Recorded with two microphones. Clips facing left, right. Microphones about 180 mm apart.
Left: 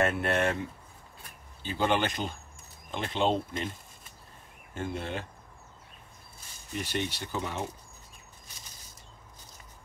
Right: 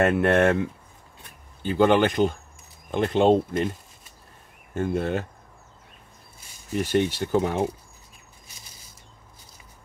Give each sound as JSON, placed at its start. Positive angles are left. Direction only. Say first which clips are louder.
{"t": 0.0, "sound": "speech", "louder": "right 8 dB", "side_deg": -55}
{"t": 4.7, "sound": "speech", "louder": "right 9 dB", "side_deg": -50}
{"t": 6.8, "sound": "speech", "louder": "right 10 dB", "side_deg": -50}